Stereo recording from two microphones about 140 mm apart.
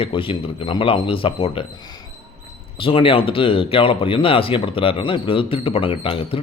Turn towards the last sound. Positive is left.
turn(degrees=40)  # may be behind; listen again after turning